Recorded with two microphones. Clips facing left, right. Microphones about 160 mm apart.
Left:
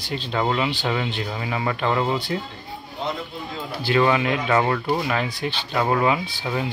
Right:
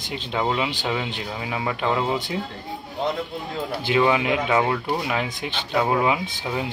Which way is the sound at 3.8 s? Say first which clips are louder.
Left 1 dB; 10° right (ahead or behind).